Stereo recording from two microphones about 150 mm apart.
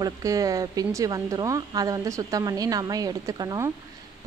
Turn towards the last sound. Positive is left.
turn(degrees=-25)  # may be behind; listen again after turning